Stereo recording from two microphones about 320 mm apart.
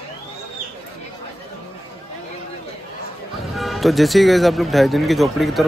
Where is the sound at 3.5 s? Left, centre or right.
Centre.